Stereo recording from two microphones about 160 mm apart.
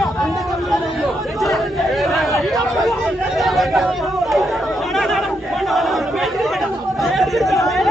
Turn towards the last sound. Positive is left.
turn(degrees=0)  # may be behind; listen again after turning